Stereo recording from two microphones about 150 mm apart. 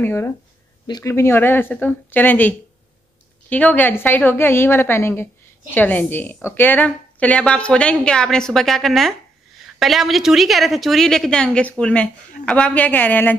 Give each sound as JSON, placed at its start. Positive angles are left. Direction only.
{"t": 0.0, "sound": "a woman's voice", "side_deg": 15}
{"t": 0.8, "sound": "speech", "side_deg": 30}
{"t": 1.1, "sound": "a woman's voice", "side_deg": 15}